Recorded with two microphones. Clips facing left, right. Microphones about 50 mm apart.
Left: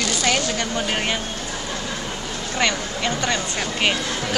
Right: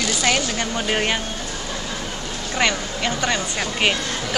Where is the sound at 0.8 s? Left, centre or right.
Centre.